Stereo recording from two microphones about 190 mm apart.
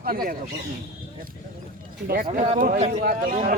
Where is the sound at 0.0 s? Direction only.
50° right (ahead or behind).